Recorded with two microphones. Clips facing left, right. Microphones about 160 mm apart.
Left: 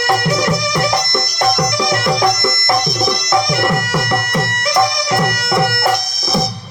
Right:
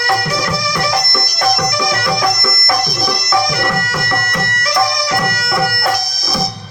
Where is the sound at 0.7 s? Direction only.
25° left (ahead or behind).